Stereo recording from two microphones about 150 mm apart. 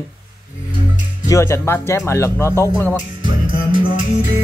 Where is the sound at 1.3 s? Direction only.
20° left (ahead or behind).